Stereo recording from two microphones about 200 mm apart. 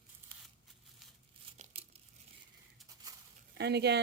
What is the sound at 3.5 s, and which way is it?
Speech, 55° right (ahead or behind).